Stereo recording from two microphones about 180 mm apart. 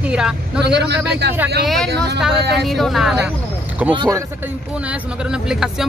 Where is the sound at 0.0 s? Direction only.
5° right (ahead or behind).